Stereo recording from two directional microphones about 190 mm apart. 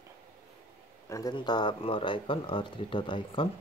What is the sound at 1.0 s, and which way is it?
Speech, 15° left (ahead or behind).